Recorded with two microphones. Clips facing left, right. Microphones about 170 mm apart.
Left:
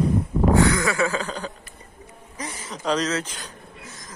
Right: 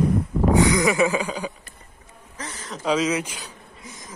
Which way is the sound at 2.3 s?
10° left (ahead or behind).